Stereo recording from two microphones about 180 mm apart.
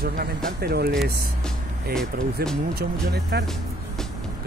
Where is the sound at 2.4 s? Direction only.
60° right (ahead or behind).